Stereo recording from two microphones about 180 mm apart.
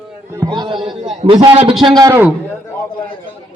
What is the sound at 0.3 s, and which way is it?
A man's voice, 20° right (ahead or behind).